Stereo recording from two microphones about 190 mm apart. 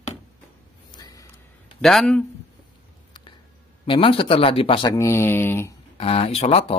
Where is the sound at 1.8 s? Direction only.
Centre (ahead or behind).